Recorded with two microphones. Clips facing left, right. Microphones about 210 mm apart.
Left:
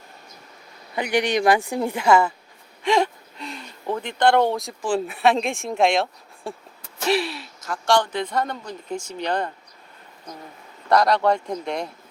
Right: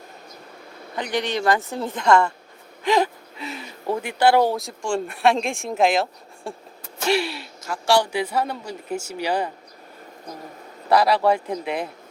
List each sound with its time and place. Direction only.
0.9 s speech: 10° left (ahead or behind); by 9.5 s 5° right (ahead or behind)
10.8 s speech: 5° right (ahead or behind)